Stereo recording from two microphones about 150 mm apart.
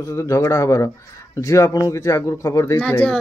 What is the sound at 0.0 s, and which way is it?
A woman's voice, 20° left (ahead or behind).